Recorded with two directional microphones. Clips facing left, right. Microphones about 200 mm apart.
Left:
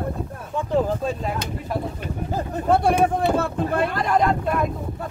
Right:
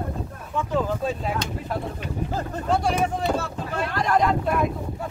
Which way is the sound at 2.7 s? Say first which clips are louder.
Left 5 dB; 55° left (ahead or behind).